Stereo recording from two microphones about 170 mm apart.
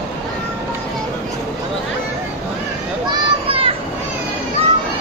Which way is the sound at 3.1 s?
35° right (ahead or behind).